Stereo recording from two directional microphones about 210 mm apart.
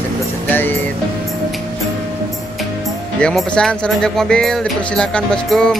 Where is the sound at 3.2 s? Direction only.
5° left (ahead or behind).